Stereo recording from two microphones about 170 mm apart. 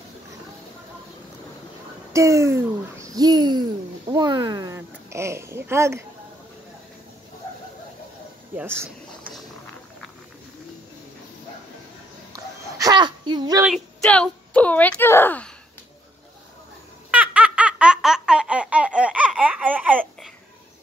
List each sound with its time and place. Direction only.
2.1 s speech: 15° right (ahead or behind)
8.5 s speech: 15° right (ahead or behind)
12.3 s a sound: 20° right (ahead or behind)
13.7 s speech: 5° left (ahead or behind)
17.1 s baby laughter: 10° right (ahead or behind)